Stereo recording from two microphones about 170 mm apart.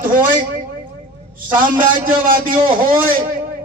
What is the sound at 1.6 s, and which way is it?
A man's voice, 50° right (ahead or behind).